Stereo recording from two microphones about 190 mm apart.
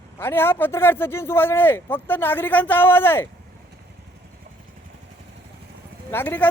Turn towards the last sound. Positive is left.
turn(degrees=10)  # may be behind; listen again after turning